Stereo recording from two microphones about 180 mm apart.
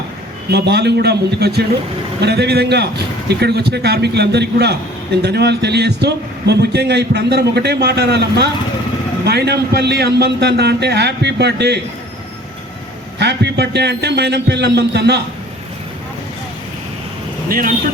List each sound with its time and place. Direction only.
0.5 s a man's voice: 65° right (ahead or behind)
13.1 s a man's voice: 70° right (ahead or behind)
17.5 s speech: 50° right (ahead or behind)